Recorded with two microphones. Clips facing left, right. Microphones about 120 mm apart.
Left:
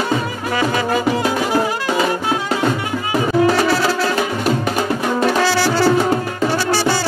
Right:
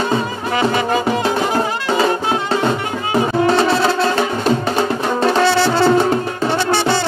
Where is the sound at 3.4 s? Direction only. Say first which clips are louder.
Right 1 dB; 25° right (ahead or behind).